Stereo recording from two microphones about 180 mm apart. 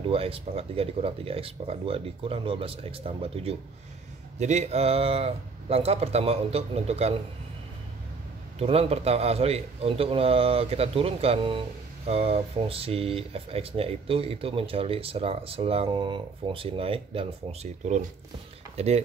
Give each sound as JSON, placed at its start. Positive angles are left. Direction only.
{"t": 0.0, "sound": "speech", "side_deg": -30}
{"t": 8.5, "sound": "speech", "side_deg": -35}